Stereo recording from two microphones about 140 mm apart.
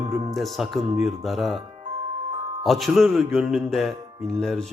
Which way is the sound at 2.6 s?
Centre (ahead or behind).